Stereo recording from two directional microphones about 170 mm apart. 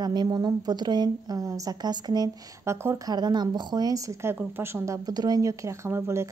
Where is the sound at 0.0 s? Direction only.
25° right (ahead or behind).